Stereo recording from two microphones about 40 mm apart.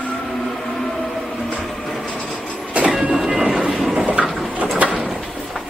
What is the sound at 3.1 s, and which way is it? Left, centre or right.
Train, centre.